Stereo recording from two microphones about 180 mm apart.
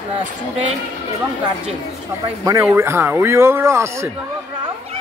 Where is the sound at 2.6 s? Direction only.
10° right (ahead or behind).